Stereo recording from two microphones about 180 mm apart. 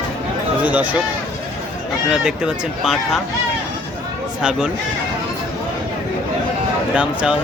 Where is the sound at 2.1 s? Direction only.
5° right (ahead or behind).